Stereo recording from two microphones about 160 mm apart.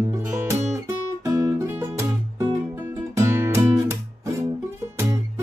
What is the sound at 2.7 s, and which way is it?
Music, 15° right (ahead or behind).